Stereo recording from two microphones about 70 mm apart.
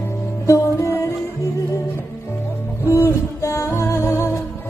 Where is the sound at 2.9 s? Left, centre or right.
Left.